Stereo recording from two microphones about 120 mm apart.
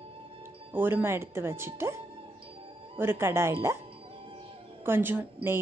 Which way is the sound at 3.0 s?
20° right (ahead or behind).